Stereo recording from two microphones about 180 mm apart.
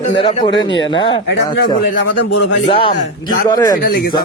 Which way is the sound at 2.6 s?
30° left (ahead or behind).